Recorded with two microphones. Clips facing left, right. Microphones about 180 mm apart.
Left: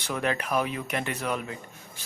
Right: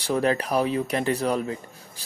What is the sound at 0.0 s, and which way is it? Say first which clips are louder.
Speech: right 6 dB; 35° right (ahead or behind).